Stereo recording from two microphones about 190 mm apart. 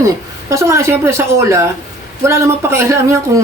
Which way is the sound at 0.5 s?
15° right (ahead or behind).